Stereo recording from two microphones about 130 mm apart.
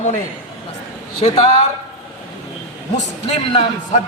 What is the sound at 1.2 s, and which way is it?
Speech, 50° left (ahead or behind).